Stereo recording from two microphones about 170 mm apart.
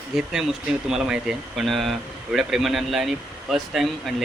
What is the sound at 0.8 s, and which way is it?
Speech, 5° right (ahead or behind).